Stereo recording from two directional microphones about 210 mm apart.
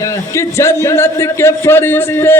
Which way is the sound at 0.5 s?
10° left (ahead or behind).